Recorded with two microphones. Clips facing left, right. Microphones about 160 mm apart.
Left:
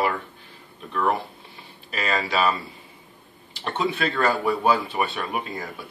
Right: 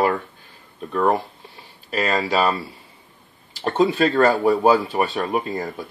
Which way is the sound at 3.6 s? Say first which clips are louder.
Right 7 dB; 40° right (ahead or behind).